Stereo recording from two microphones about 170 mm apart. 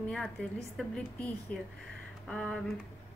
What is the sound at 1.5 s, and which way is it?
Speech, 55° left (ahead or behind).